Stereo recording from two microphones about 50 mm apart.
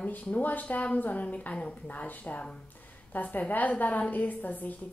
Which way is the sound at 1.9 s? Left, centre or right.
Left.